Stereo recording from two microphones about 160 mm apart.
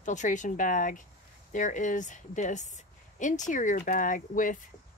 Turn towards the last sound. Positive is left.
turn(degrees=55)  # may be behind; listen again after turning